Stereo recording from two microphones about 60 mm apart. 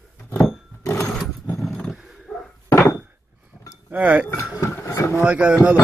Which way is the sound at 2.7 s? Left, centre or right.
Left.